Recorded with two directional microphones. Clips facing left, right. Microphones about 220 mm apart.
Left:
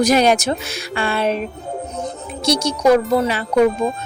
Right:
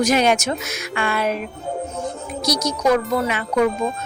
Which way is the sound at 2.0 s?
25° left (ahead or behind).